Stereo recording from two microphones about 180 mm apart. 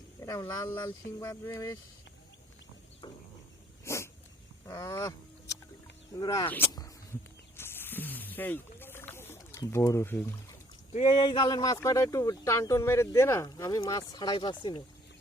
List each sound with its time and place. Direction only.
0.2 s speech: 20° left (ahead or behind)
3.8 s dog: 15° left (ahead or behind)
4.6 s speech: 20° left (ahead or behind)
6.1 s speech: 20° left (ahead or behind)
6.7 s snake: 20° left (ahead or behind)
10.9 s speech: 40° left (ahead or behind)
11.2 s speech: 25° left (ahead or behind)